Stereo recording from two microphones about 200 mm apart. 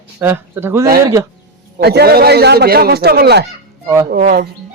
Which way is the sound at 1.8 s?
55° right (ahead or behind).